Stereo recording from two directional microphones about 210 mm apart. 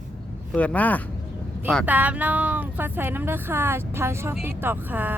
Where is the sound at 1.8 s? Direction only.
5° right (ahead or behind).